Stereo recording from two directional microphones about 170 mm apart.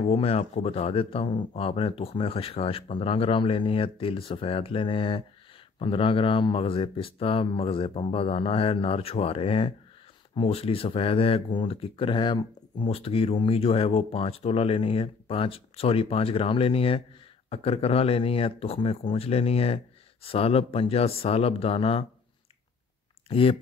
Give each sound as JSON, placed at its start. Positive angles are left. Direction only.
{"t": 0.0, "sound": "speech", "side_deg": 35}
{"t": 23.2, "sound": "speech", "side_deg": 35}